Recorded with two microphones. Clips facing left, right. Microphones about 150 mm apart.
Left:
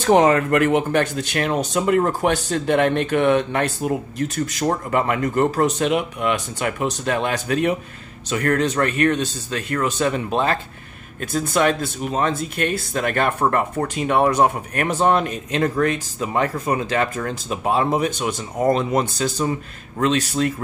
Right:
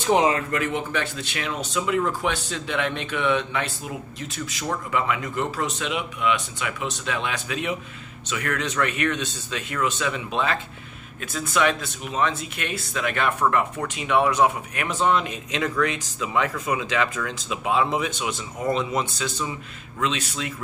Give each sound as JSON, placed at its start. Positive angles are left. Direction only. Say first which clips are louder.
{"t": 0.0, "sound": "speech", "louder": "left 5 dB", "side_deg": 50}